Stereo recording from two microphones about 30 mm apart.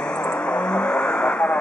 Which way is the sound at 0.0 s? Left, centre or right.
Left.